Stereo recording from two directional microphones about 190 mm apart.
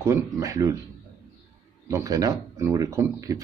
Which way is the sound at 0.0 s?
15° right (ahead or behind).